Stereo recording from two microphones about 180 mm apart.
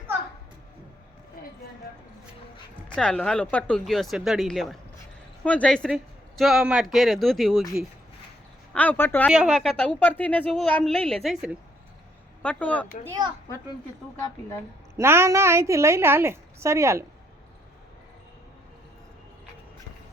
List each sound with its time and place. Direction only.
1.4 s clip-clop: 55° left (ahead or behind)
2.9 s a man's voice: 5° left (ahead or behind)
8.7 s speech: 10° left (ahead or behind)
9.3 s a man's voice: centre (ahead or behind)
14.9 s a woman's voice: 15° right (ahead or behind)